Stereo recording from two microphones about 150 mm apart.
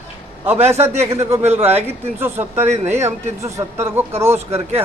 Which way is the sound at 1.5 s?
45° right (ahead or behind).